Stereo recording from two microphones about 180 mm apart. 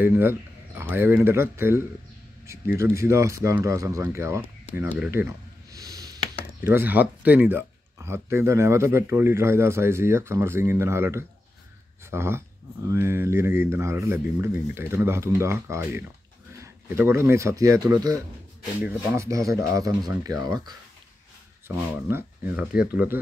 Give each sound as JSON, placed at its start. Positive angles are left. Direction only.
{"t": 0.0, "sound": "speech", "side_deg": -10}
{"t": 5.8, "sound": "a sound", "side_deg": -20}
{"t": 6.6, "sound": "speech", "side_deg": -10}